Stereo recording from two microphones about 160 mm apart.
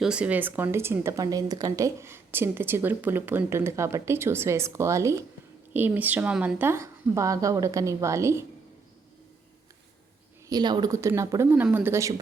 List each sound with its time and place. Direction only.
0.0 s speech: 5° right (ahead or behind)
10.5 s speech: 25° right (ahead or behind)